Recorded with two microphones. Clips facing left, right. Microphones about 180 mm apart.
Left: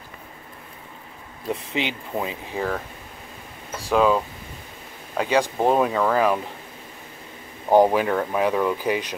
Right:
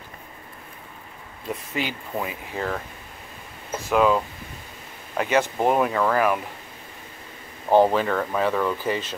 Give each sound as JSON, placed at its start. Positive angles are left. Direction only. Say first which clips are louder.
{"t": 1.5, "sound": "speech", "louder": "left 2 dB", "side_deg": 20}
{"t": 3.9, "sound": "speech", "louder": "left 1 dB", "side_deg": -5}
{"t": 5.1, "sound": "speech", "louder": "left 1 dB", "side_deg": 15}
{"t": 7.7, "sound": "speech", "louder": "left 1 dB", "side_deg": 15}